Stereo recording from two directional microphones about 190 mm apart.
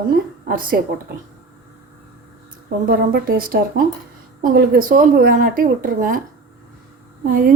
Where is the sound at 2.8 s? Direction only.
50° right (ahead or behind).